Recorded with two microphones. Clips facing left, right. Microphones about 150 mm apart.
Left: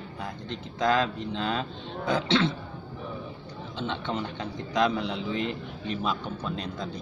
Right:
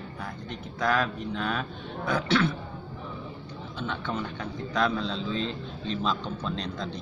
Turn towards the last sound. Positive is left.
turn(degrees=5)  # may be behind; listen again after turning